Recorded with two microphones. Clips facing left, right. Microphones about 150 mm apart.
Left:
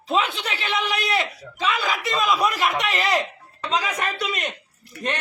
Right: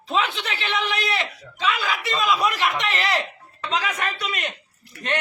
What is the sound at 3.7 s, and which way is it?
Speech, 40° left (ahead or behind).